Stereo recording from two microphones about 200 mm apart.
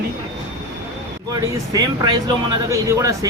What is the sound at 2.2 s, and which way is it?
A man's voice, 15° right (ahead or behind).